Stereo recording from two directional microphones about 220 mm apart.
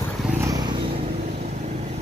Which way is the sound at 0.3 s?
15° right (ahead or behind).